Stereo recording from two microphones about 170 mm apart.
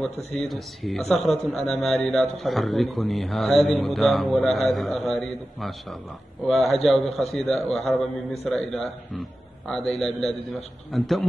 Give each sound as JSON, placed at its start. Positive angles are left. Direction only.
{"t": 0.1, "sound": "speech", "side_deg": 40}
{"t": 0.5, "sound": "a man's voice", "side_deg": 0}